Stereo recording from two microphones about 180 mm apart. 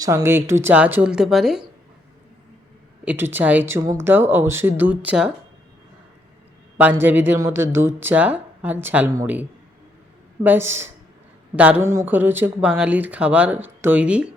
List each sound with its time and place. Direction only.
0.0 s speech: 15° right (ahead or behind)
3.0 s speech: 10° right (ahead or behind)
6.7 s speech: 10° right (ahead or behind)